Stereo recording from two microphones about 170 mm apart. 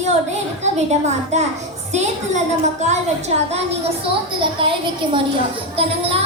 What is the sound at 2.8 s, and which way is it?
A woman's voice, 40° right (ahead or behind).